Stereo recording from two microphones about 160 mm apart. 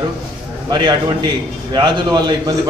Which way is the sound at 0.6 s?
25° right (ahead or behind).